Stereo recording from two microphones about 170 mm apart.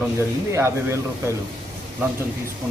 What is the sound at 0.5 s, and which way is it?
Speech, 15° right (ahead or behind).